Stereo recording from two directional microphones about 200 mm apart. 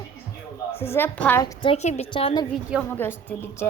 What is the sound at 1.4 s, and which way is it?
A woman's voice, 25° left (ahead or behind).